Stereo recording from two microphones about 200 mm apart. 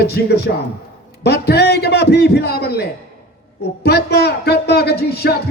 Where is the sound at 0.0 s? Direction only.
50° left (ahead or behind).